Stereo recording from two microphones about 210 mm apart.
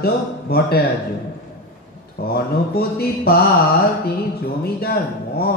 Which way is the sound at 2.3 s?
50° left (ahead or behind).